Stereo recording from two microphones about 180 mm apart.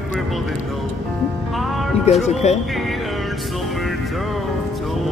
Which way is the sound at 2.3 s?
40° left (ahead or behind).